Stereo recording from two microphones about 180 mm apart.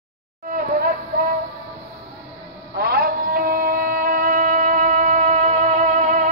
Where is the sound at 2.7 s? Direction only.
60° right (ahead or behind).